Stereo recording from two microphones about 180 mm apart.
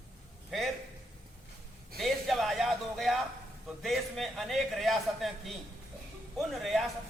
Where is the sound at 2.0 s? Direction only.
Centre (ahead or behind).